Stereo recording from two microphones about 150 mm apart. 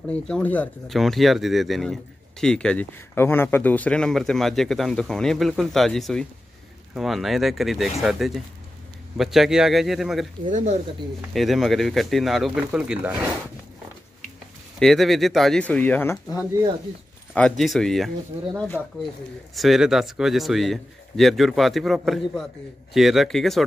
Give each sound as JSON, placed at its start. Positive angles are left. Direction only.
{"t": 0.1, "sound": "speech", "side_deg": 10}
{"t": 0.9, "sound": "speech", "side_deg": 0}
{"t": 10.5, "sound": "speech", "side_deg": -45}
{"t": 11.3, "sound": "speech", "side_deg": 0}
{"t": 14.8, "sound": "speech", "side_deg": 0}
{"t": 18.8, "sound": "speech", "side_deg": -10}